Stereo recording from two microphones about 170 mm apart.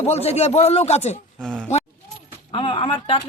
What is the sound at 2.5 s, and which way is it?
Speech, 30° left (ahead or behind).